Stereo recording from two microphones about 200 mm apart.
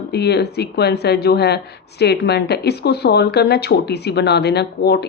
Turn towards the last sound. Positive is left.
turn(degrees=55)  # may be behind; listen again after turning